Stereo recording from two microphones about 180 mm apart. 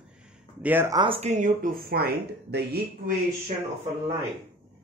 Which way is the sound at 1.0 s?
35° right (ahead or behind).